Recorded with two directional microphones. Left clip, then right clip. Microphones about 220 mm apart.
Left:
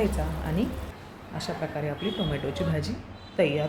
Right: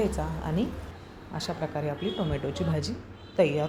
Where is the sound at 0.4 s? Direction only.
20° right (ahead or behind).